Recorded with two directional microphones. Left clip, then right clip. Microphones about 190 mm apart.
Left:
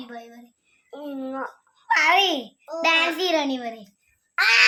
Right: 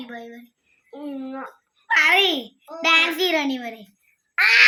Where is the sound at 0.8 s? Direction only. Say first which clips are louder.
Left 1 dB; 10° left (ahead or behind).